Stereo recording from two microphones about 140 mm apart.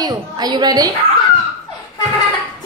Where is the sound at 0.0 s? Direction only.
30° right (ahead or behind).